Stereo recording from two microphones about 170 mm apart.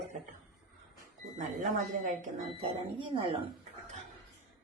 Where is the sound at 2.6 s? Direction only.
30° right (ahead or behind).